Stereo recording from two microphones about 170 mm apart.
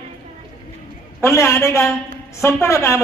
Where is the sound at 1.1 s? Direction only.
15° left (ahead or behind).